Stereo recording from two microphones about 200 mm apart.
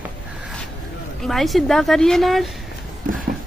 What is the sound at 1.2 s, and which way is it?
A woman's voice, centre (ahead or behind).